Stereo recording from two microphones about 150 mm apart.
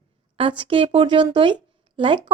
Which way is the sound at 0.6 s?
40° right (ahead or behind).